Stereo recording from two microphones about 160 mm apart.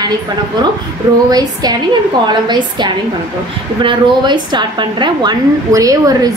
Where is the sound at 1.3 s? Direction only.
25° right (ahead or behind).